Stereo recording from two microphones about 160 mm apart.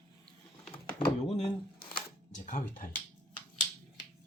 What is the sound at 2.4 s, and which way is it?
Speech, 55° left (ahead or behind).